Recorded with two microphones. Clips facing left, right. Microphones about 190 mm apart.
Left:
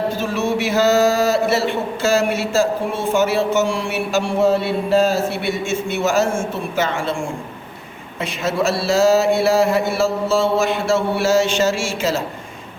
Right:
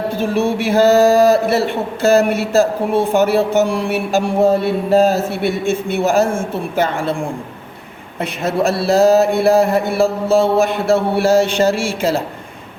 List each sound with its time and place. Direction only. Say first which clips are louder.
0.1 s a man's voice: right 3 dB; 55° right (ahead or behind)
8.2 s a man's voice: right 3 dB; 55° right (ahead or behind)